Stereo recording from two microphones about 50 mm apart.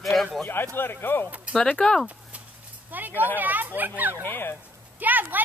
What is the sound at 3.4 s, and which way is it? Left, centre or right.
Speech, right.